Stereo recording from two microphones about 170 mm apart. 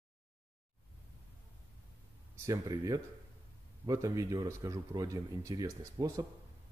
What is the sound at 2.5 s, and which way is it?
Speech, 20° right (ahead or behind).